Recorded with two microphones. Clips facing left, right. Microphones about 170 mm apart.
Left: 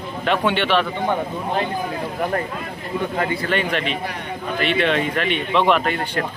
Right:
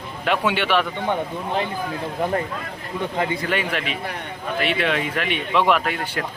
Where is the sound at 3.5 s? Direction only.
5° right (ahead or behind).